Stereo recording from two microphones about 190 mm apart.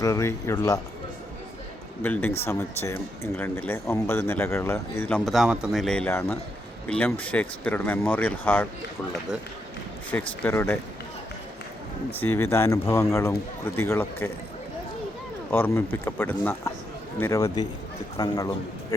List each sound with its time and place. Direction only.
0.0 s speech: 15° left (ahead or behind)
2.0 s speech: 10° left (ahead or behind)
10.1 s speech: 10° left (ahead or behind)
12.1 s speech: 10° left (ahead or behind)
15.4 s a man's voice: 10° left (ahead or behind)